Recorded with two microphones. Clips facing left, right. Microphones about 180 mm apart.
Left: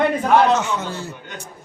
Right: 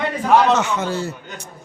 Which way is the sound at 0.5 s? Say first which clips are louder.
Right 3 dB; 75° right (ahead or behind).